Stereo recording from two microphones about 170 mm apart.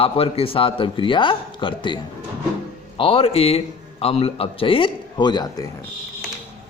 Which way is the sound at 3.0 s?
35° left (ahead or behind).